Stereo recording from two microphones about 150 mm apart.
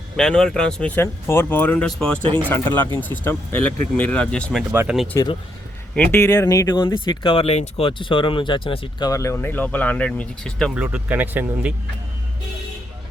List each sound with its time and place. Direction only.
0.2 s speech: 5° left (ahead or behind)
4.9 s speech: 5° right (ahead or behind)
5.9 s speech: 10° left (ahead or behind)
6.2 s speech: 20° left (ahead or behind); by 10.7 s 5° left (ahead or behind)
10.8 s speech: 10° right (ahead or behind)